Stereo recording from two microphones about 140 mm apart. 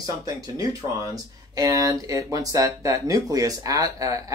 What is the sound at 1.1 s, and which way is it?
Speech, 25° right (ahead or behind).